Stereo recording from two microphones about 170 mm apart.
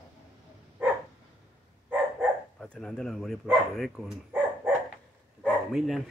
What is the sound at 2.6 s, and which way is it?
Speech, 5° left (ahead or behind).